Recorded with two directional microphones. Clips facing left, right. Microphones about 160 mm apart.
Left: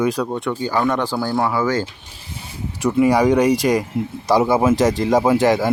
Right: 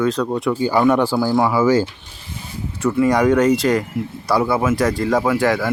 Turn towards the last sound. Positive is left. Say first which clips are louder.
# left 2 dB
turn(degrees=20)  # may be behind; listen again after turning